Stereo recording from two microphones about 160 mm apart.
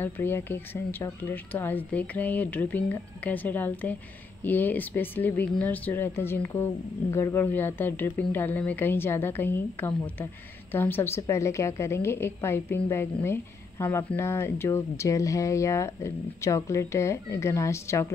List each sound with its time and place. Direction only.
0.0 s speech: 15° left (ahead or behind)